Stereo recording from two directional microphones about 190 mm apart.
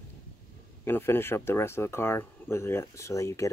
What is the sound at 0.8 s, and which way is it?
Speech, 10° left (ahead or behind).